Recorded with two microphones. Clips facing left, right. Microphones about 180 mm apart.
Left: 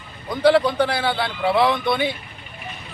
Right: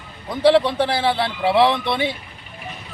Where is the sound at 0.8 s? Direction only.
30° right (ahead or behind).